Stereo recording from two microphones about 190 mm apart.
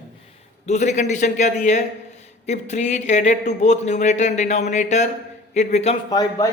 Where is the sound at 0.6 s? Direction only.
40° left (ahead or behind).